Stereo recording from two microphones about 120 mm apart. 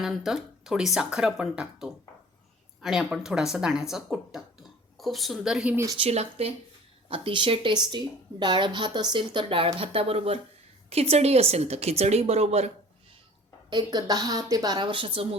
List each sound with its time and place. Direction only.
0.0 s speech: 5° right (ahead or behind)
5.7 s speech: 25° right (ahead or behind)
6.0 s a woman's voice: 60° right (ahead or behind)
7.1 s a woman's voice: 45° right (ahead or behind); by 12.7 s 65° right (ahead or behind)
13.7 s a woman's voice: 35° right (ahead or behind); by 15.4 s 50° right (ahead or behind)